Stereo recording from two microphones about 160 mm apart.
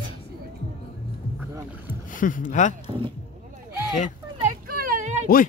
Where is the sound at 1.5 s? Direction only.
15° right (ahead or behind).